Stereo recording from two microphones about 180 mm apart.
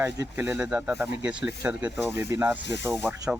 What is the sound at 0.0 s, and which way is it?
Speech, 10° right (ahead or behind).